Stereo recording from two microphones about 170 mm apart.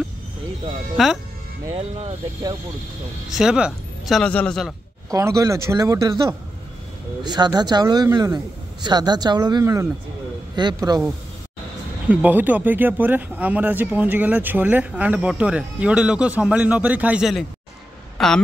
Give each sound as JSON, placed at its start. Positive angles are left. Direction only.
{"t": 0.9, "sound": "speech", "side_deg": 0}
{"t": 3.3, "sound": "speech", "side_deg": -5}
{"t": 5.1, "sound": "speech", "side_deg": -20}
{"t": 12.1, "sound": "speech", "side_deg": -10}
{"t": 18.1, "sound": "a sound", "side_deg": 5}